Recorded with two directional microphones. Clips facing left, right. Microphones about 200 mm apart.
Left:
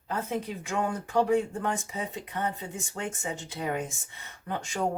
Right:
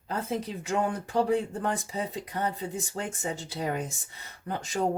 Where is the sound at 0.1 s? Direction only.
35° right (ahead or behind).